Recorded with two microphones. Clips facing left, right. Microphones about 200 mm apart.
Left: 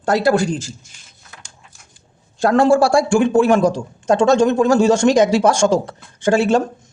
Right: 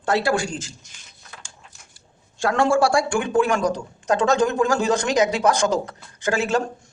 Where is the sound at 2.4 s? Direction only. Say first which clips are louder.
Left 6 dB; 35° left (ahead or behind).